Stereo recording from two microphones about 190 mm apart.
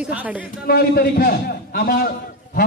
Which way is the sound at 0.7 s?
55° left (ahead or behind).